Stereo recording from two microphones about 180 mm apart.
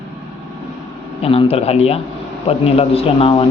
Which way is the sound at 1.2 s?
30° left (ahead or behind).